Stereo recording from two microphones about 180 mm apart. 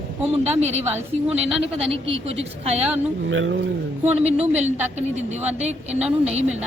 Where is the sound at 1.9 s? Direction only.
30° right (ahead or behind).